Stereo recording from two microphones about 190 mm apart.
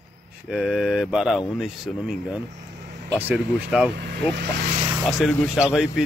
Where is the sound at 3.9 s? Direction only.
60° right (ahead or behind).